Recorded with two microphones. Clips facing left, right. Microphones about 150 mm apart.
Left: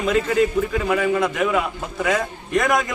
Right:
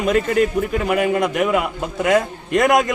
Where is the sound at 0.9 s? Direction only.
45° right (ahead or behind).